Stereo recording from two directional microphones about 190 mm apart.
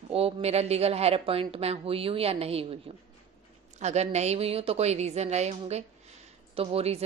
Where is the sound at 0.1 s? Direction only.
30° right (ahead or behind).